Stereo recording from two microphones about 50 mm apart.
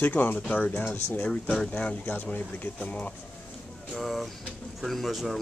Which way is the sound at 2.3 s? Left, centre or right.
Left.